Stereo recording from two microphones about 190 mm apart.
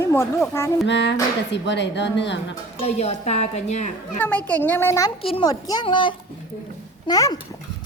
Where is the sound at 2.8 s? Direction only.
35° left (ahead or behind).